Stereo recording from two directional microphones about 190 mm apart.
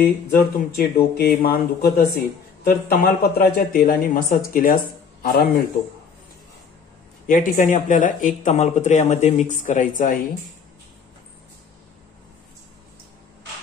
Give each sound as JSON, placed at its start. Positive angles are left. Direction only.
{"t": 0.4, "sound": "a man's voice", "side_deg": 55}
{"t": 7.2, "sound": "speech", "side_deg": 45}